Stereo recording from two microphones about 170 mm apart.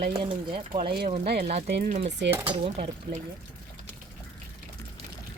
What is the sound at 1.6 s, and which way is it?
Speech, 70° right (ahead or behind).